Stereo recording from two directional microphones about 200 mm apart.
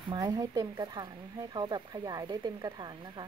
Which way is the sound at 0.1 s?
20° right (ahead or behind).